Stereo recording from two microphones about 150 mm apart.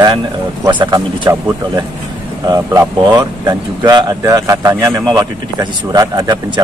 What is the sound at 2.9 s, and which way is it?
A man's voice, 30° right (ahead or behind).